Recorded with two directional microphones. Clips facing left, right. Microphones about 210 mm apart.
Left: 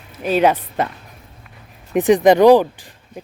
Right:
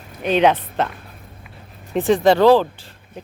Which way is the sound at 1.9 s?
15° left (ahead or behind).